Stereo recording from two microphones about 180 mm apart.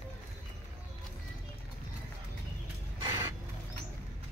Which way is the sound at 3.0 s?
25° right (ahead or behind).